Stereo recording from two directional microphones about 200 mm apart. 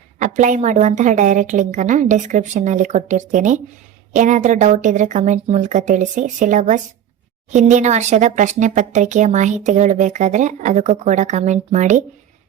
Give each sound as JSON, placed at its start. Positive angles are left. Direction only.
{"t": 0.2, "sound": "speech", "side_deg": -40}